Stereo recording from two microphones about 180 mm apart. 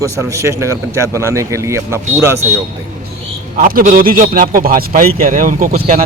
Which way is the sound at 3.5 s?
55° right (ahead or behind).